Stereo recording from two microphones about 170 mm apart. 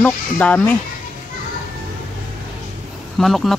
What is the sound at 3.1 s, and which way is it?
Speech, centre (ahead or behind).